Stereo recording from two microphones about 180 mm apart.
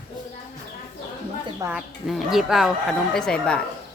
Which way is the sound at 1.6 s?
20° right (ahead or behind).